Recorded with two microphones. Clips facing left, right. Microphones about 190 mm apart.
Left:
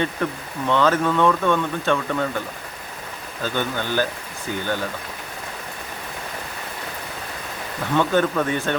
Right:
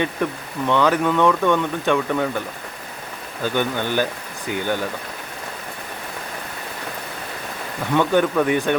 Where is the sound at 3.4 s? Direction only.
15° right (ahead or behind).